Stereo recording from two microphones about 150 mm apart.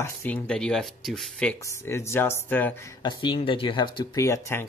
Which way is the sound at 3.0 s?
30° left (ahead or behind).